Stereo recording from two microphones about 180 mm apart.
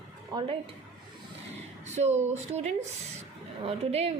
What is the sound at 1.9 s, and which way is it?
Speech, 40° right (ahead or behind).